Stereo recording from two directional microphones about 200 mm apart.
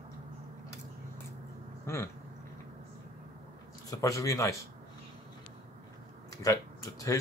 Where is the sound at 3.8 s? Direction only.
15° left (ahead or behind).